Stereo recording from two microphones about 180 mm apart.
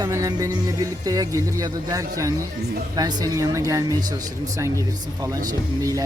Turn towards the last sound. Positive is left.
turn(degrees=-20)  # may be behind; listen again after turning